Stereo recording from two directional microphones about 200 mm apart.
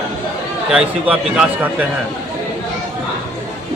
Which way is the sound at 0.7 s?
5° right (ahead or behind).